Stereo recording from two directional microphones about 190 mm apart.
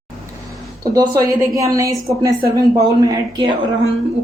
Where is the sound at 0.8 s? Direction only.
20° right (ahead or behind).